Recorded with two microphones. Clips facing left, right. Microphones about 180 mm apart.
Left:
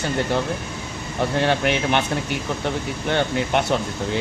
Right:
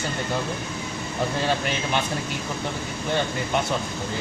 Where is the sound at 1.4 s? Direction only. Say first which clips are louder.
Left 5 dB; 65° left (ahead or behind).